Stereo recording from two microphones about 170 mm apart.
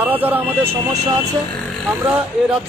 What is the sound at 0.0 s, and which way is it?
Speech, 10° right (ahead or behind).